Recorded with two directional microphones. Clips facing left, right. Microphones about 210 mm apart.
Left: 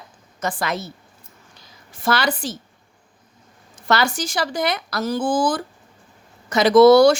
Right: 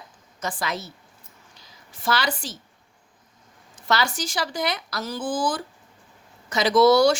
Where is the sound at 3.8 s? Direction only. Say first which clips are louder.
Left 4 dB; 55° left (ahead or behind).